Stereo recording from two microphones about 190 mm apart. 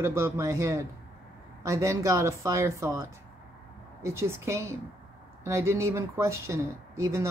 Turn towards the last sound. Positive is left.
turn(degrees=-15)  # may be behind; listen again after turning